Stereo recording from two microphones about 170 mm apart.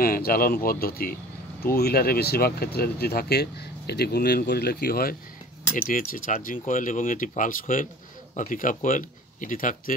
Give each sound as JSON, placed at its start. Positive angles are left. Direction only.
{"t": 0.0, "sound": "speech", "side_deg": 60}